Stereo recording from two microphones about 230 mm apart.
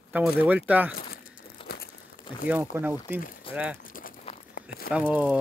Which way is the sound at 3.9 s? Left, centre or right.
Left.